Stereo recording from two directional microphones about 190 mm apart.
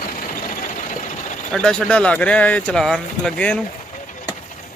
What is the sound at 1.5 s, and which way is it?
Speech, 5° left (ahead or behind).